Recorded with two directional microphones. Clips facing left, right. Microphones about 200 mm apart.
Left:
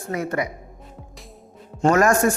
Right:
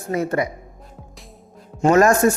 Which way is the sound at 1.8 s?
25° right (ahead or behind).